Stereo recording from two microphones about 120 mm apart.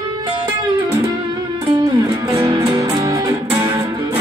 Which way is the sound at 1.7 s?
45° right (ahead or behind).